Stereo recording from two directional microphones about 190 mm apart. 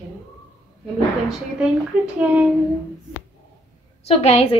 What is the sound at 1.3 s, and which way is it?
A woman's voice, 5° right (ahead or behind).